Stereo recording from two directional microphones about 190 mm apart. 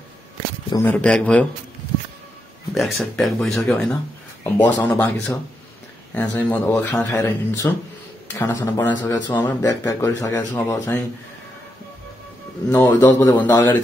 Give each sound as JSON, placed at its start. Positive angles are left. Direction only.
{"t": 0.7, "sound": "speech", "side_deg": 10}
{"t": 2.7, "sound": "speech", "side_deg": 0}
{"t": 12.6, "sound": "speech", "side_deg": 15}